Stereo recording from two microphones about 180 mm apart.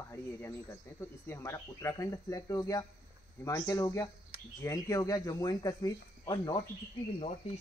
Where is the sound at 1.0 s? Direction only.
15° left (ahead or behind).